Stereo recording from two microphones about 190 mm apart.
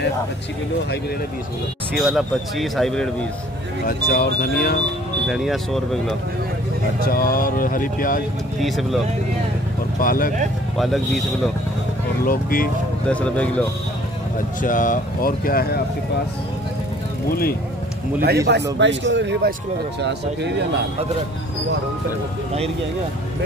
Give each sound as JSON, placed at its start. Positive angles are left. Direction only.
{"t": 2.0, "sound": "speech", "side_deg": 0}
{"t": 3.8, "sound": "speech", "side_deg": 50}
{"t": 5.3, "sound": "speech", "side_deg": 0}
{"t": 7.1, "sound": "speech", "side_deg": 50}
{"t": 8.5, "sound": "speech", "side_deg": 0}
{"t": 9.9, "sound": "speech", "side_deg": 50}
{"t": 10.8, "sound": "speech", "side_deg": 0}
{"t": 12.3, "sound": "speech", "side_deg": 50}
{"t": 13.1, "sound": "speech", "side_deg": 5}
{"t": 14.6, "sound": "speech", "side_deg": 45}
{"t": 18.8, "sound": "a man's voice", "side_deg": -70}